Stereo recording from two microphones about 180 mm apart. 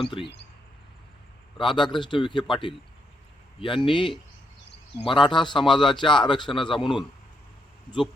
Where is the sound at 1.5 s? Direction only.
25° left (ahead or behind).